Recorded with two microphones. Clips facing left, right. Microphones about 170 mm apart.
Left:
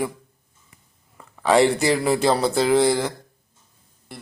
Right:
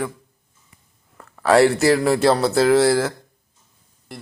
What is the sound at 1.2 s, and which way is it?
Speech, centre (ahead or behind).